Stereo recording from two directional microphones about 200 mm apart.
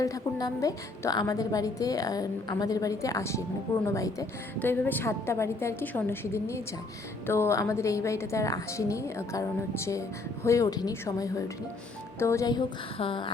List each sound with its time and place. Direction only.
0.0 s a woman's voice: 20° left (ahead or behind)